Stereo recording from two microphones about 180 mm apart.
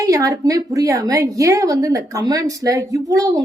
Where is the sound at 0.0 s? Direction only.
20° right (ahead or behind).